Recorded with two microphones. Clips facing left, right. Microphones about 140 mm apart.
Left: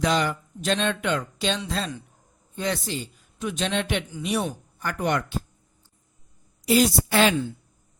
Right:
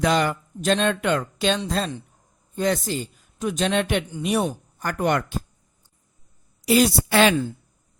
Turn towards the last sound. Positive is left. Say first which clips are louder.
# right 2 dB
turn(degrees=-75)  # may be behind; listen again after turning